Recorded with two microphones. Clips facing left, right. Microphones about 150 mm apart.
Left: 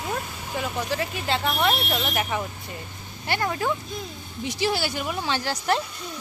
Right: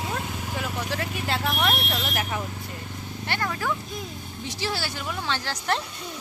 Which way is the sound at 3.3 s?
20° left (ahead or behind).